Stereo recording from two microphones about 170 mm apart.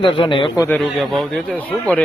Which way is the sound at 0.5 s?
15° left (ahead or behind).